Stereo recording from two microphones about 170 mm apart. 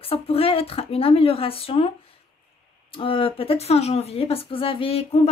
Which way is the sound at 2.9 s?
30° left (ahead or behind).